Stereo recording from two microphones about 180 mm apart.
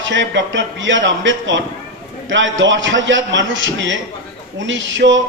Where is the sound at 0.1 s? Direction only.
90° right.